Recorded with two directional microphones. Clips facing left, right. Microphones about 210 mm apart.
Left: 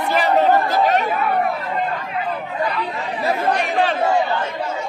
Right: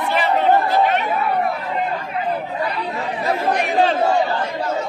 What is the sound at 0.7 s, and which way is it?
Chatter, 40° left (ahead or behind).